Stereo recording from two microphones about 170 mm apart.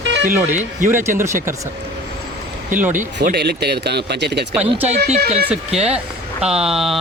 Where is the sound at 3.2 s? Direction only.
70° right (ahead or behind).